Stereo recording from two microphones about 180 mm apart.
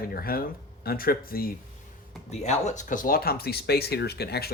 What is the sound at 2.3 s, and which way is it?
Speech, 40° left (ahead or behind).